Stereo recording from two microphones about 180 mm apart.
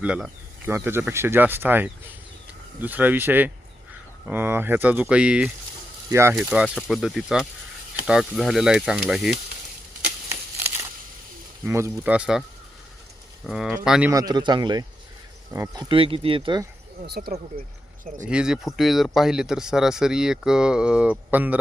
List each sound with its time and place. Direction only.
0.0 s speech: 5° right (ahead or behind)
11.6 s speech: 15° right (ahead or behind)
13.5 s speech: centre (ahead or behind)
14.1 s speech: 20° right (ahead or behind)
17.1 s speech: 55° right (ahead or behind)
18.2 s speech: 5° right (ahead or behind)